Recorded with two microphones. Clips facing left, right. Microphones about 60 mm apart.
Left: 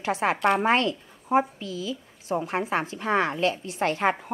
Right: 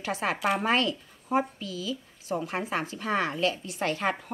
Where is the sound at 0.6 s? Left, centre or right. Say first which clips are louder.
Left 3 dB; left.